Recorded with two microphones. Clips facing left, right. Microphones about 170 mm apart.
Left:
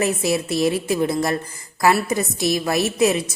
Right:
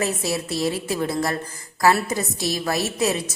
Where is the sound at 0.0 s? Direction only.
20° left (ahead or behind).